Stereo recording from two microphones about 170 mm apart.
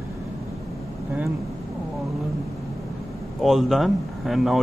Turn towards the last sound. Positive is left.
turn(degrees=0)  # may be behind; listen again after turning